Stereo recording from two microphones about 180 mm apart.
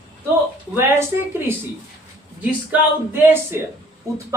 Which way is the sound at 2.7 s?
5° right (ahead or behind).